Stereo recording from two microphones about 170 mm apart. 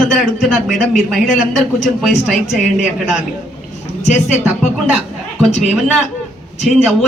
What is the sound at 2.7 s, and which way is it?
A man's voice, 45° left (ahead or behind).